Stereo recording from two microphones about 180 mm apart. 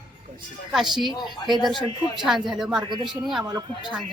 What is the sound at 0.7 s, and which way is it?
A woman's voice, centre (ahead or behind).